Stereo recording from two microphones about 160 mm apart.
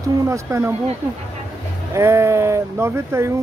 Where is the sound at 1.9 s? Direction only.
15° right (ahead or behind).